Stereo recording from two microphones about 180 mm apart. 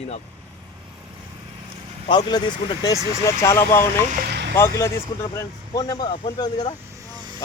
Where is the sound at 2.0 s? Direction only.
25° left (ahead or behind).